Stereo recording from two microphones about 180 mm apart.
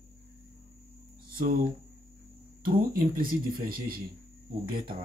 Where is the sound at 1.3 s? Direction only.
55° right (ahead or behind).